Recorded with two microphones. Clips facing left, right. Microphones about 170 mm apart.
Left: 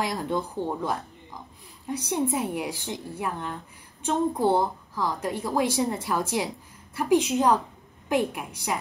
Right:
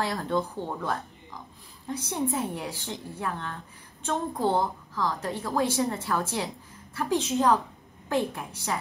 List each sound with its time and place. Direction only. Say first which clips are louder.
0.0 s a woman's voice: even; 15° left (ahead or behind)